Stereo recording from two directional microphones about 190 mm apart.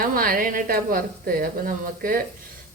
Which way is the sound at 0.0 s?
50° right (ahead or behind).